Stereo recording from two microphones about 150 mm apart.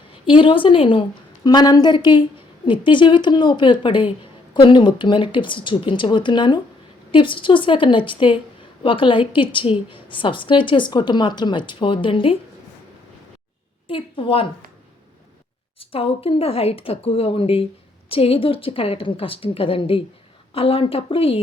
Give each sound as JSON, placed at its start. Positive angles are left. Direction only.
{"t": 0.3, "sound": "a woman's voice", "side_deg": 35}
{"t": 13.8, "sound": "a woman's voice", "side_deg": 35}
{"t": 15.8, "sound": "a woman's voice", "side_deg": 40}